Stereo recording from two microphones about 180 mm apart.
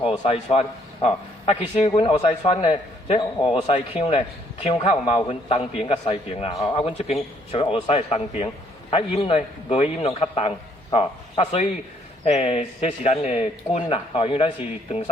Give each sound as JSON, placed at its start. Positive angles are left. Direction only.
{"t": 0.0, "sound": "a man's voice", "side_deg": 30}